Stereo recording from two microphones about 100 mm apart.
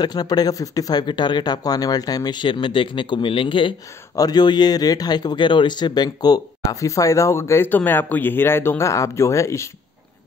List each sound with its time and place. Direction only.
0.0 s speech: 45° left (ahead or behind)
4.1 s a man's voice: 40° left (ahead or behind)